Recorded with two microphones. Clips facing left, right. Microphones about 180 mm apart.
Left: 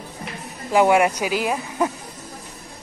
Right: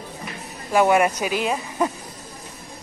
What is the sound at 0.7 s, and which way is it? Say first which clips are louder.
Speech: left 1 dB; 15° left (ahead or behind).